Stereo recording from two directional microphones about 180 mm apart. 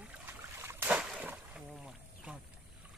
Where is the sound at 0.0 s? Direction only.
10° right (ahead or behind).